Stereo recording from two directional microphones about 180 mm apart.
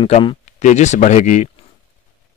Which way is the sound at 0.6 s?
40° left (ahead or behind).